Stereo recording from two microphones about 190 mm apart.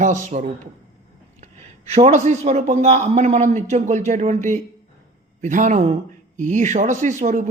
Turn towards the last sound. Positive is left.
turn(degrees=-40)  # may be behind; listen again after turning